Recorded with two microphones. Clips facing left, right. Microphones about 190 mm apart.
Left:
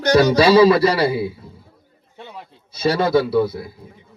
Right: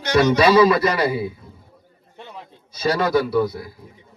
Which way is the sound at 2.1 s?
5° left (ahead or behind).